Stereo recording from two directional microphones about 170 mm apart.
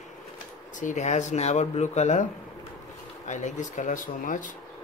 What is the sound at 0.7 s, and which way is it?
Speech, 45° left (ahead or behind).